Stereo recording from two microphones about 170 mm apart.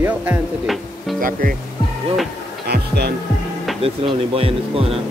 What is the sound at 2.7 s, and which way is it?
Music, 70° right (ahead or behind).